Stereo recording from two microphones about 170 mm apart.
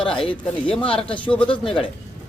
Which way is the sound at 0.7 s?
30° left (ahead or behind).